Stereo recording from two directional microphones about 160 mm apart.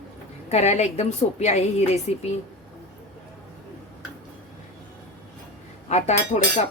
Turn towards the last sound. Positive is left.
turn(degrees=45)  # may be behind; listen again after turning